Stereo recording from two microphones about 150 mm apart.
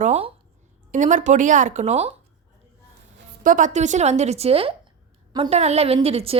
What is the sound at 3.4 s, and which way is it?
A woman's voice, 60° right (ahead or behind).